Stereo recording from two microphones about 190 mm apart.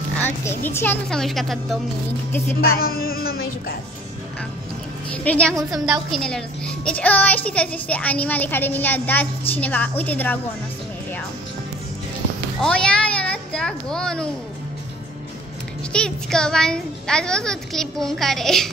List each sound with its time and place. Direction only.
0.2 s speech: 10° left (ahead or behind)
2.8 s music: 50° left (ahead or behind)
5.1 s speech: 5° left (ahead or behind)
12.6 s a child's voice: 5° left (ahead or behind)
15.9 s a child's voice: 5° left (ahead or behind)